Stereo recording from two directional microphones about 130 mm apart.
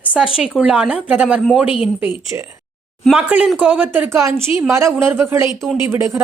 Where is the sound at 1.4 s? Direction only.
Centre (ahead or behind).